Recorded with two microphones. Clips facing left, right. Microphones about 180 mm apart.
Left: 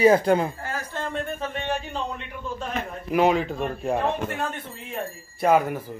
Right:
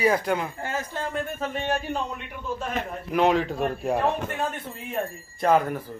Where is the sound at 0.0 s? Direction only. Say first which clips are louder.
Left 6 dB; 30° left (ahead or behind).